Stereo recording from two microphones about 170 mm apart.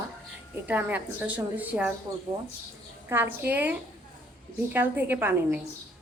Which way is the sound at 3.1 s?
10° right (ahead or behind).